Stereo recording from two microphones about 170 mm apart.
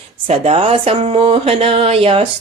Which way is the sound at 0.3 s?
35° right (ahead or behind).